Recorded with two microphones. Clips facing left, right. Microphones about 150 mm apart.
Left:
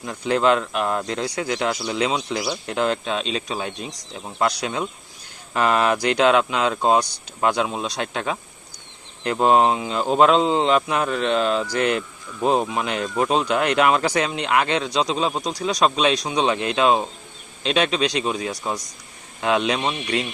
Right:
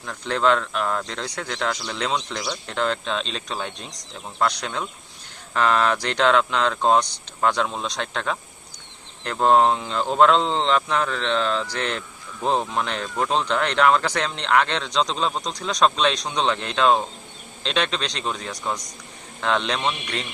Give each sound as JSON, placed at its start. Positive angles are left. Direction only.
{"t": 0.0, "sound": "speech", "side_deg": 10}